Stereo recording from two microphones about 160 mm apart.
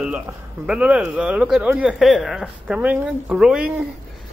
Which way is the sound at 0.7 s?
5° right (ahead or behind).